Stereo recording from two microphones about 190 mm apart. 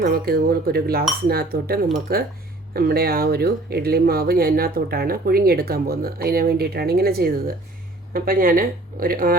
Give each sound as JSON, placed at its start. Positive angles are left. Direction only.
{"t": 0.0, "sound": "speech", "side_deg": -55}